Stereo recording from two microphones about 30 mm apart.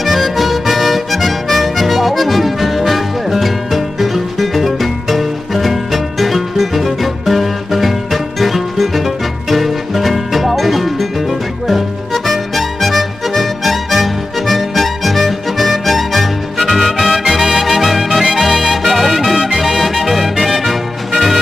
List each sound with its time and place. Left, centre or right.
0.0 s music: centre
12.1 s music: centre
19.3 s music: centre
19.6 s music: centre